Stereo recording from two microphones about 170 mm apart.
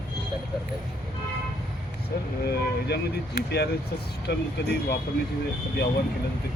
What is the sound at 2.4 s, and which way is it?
Speech, 70° left (ahead or behind).